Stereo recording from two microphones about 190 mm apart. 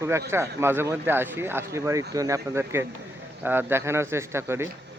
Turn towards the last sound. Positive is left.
turn(degrees=-15)  # may be behind; listen again after turning